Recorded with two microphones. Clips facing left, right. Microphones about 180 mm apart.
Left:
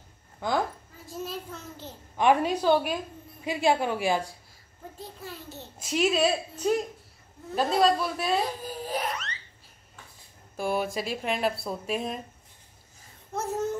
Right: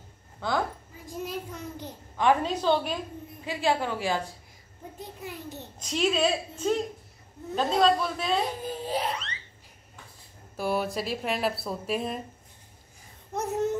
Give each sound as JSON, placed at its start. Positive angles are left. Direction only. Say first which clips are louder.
{"t": 0.4, "sound": "a woman's voice", "louder": "left 1 dB", "side_deg": 15}
{"t": 1.0, "sound": "a child's voice", "louder": "right 1 dB", "side_deg": -15}
{"t": 2.1, "sound": "a woman's voice", "louder": "left 1 dB", "side_deg": 15}
{"t": 4.9, "sound": "a child's voice", "louder": "right 2 dB", "side_deg": -15}
{"t": 5.8, "sound": "speech", "louder": "left 1 dB", "side_deg": 5}
{"t": 8.6, "sound": "a sound", "louder": "right 2 dB", "side_deg": -25}
{"t": 10.5, "sound": "speech", "louder": "even", "side_deg": 0}
{"t": 13.3, "sound": "a sound", "louder": "right 2 dB", "side_deg": -20}